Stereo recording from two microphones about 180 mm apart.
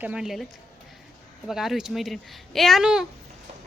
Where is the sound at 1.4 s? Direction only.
Centre (ahead or behind).